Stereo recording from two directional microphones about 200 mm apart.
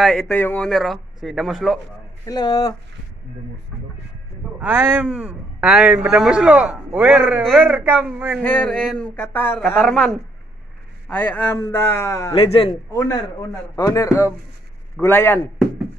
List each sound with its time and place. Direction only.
0.0 s speech: centre (ahead or behind)
2.2 s speech: 20° left (ahead or behind)
4.6 s a man's voice: 10° right (ahead or behind)
8.4 s a man's voice: 10° left (ahead or behind)
12.5 s speech: 25° left (ahead or behind)
13.0 s a man's voice: 15° left (ahead or behind)